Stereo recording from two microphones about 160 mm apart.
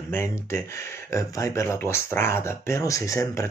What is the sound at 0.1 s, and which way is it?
Speech, 15° left (ahead or behind).